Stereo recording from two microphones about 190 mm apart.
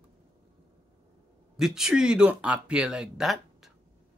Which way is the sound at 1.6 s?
5° right (ahead or behind).